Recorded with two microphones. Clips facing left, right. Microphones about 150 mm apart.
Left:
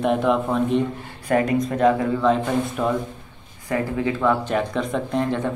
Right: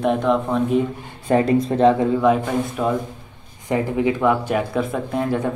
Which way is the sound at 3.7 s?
15° right (ahead or behind).